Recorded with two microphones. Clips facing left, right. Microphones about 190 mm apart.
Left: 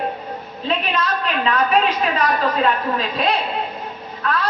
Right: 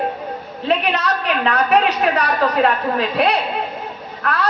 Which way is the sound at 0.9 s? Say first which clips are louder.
Right 2 dB; 70° right (ahead or behind).